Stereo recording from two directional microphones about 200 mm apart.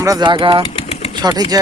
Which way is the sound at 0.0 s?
20° right (ahead or behind).